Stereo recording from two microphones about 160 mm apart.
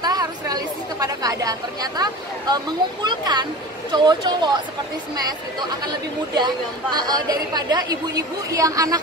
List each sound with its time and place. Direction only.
0.0 s speech: 25° right (ahead or behind)